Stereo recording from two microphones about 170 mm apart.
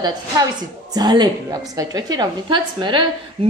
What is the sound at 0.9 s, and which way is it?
A woman's voice, 25° right (ahead or behind).